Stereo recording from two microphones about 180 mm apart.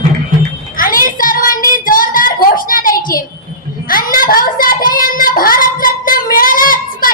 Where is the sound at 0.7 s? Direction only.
50° left (ahead or behind).